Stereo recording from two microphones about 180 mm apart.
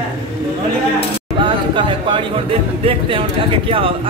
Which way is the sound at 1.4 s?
25° right (ahead or behind).